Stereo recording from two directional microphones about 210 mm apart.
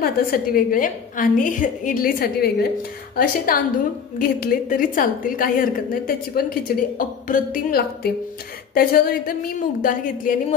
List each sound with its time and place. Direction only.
0.0 s a woman's voice: 45° left (ahead or behind)